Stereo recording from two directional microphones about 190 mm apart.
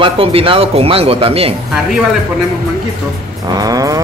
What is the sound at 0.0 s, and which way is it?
Speech, 30° right (ahead or behind).